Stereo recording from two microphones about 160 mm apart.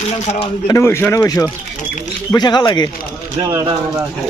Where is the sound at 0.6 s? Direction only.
20° left (ahead or behind).